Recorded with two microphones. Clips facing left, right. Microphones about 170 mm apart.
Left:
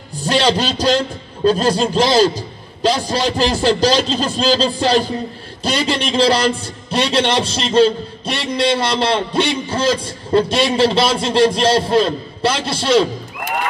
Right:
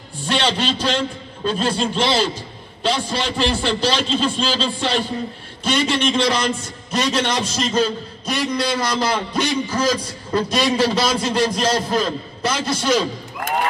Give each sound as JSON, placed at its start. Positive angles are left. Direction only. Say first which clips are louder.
{"t": 0.2, "sound": "a man's voice", "louder": "left 5 dB", "side_deg": 40}